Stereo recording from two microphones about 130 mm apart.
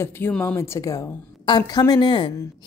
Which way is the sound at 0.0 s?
15° left (ahead or behind).